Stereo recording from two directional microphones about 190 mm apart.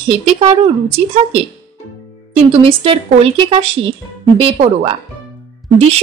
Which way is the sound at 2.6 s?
30° right (ahead or behind).